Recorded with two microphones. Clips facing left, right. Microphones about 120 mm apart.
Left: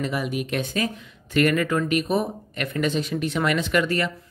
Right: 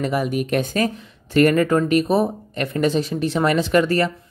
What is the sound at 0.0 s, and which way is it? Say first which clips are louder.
Speech: right 5 dB; 45° right (ahead or behind).